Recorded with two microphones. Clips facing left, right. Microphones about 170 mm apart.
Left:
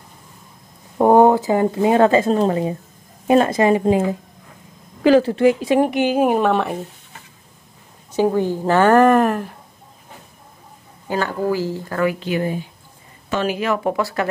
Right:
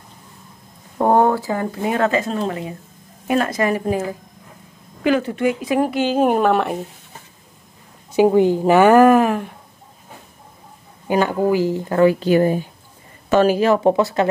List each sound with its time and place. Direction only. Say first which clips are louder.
0.9 s speech: left 3 dB; 15° left (ahead or behind)
6.2 s a woman's voice: right 1 dB; centre (ahead or behind)
8.2 s a woman's voice: right 4 dB; 15° right (ahead or behind); by 9.6 s centre (ahead or behind)
11.1 s speech: right 4 dB; 15° right (ahead or behind)